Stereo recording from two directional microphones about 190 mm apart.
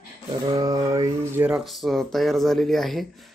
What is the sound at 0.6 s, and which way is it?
Mantra, 20° right (ahead or behind).